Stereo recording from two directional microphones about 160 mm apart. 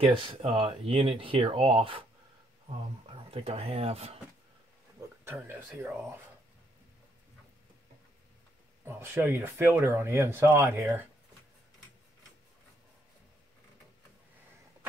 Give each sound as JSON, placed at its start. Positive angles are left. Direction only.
{"t": 0.0, "sound": "speech", "side_deg": -35}
{"t": 3.3, "sound": "speech", "side_deg": -40}
{"t": 5.2, "sound": "speech", "side_deg": -15}
{"t": 8.8, "sound": "speech", "side_deg": -15}